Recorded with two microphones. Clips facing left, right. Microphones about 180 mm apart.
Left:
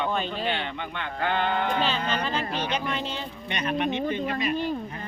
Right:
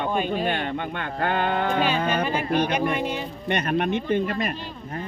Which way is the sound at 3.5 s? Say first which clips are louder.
Right 4 dB; 50° right (ahead or behind).